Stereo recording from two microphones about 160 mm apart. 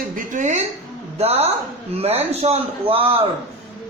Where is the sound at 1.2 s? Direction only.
40° right (ahead or behind).